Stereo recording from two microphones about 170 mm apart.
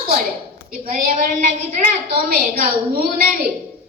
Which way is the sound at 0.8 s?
50° right (ahead or behind).